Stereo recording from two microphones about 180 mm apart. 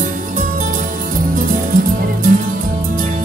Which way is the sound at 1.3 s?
50° right (ahead or behind).